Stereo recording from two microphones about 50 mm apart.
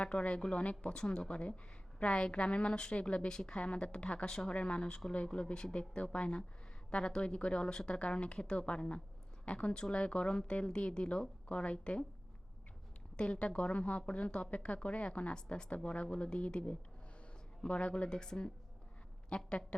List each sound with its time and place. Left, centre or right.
0.0 s a woman's voice: left
13.1 s a woman's voice: left